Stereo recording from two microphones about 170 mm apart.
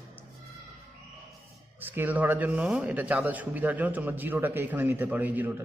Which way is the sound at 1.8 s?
10° right (ahead or behind).